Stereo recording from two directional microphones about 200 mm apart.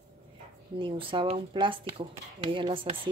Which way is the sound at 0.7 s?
25° right (ahead or behind).